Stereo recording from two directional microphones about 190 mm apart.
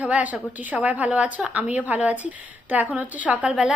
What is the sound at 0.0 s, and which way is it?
A woman's voice, 5° right (ahead or behind).